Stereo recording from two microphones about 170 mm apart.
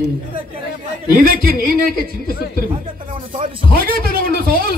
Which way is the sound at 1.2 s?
60° right (ahead or behind).